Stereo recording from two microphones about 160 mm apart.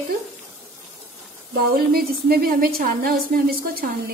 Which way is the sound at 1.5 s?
70° right (ahead or behind).